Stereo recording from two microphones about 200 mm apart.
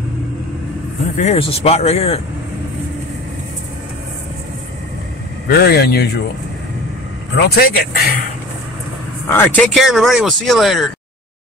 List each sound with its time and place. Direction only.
1.1 s speech: 35° left (ahead or behind)
5.5 s speech: 50° left (ahead or behind)
7.3 s speech: 50° left (ahead or behind)
9.3 s speech: 10° left (ahead or behind)
9.8 s speech: centre (ahead or behind)